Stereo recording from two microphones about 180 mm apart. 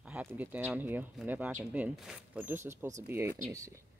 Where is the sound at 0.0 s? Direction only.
10° right (ahead or behind).